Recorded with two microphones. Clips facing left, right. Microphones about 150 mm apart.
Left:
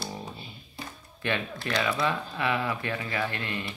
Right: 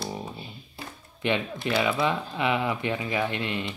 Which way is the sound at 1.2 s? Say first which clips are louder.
Right 4 dB; 20° right (ahead or behind).